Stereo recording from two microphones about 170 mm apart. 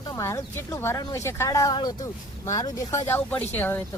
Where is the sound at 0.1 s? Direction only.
20° left (ahead or behind).